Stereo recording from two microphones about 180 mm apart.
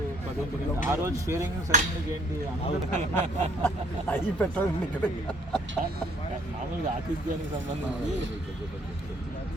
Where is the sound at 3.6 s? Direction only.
10° left (ahead or behind).